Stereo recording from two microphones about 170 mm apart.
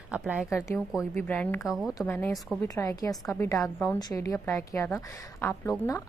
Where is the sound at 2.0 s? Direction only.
10° left (ahead or behind).